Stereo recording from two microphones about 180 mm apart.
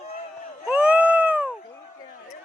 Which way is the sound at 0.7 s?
5° right (ahead or behind).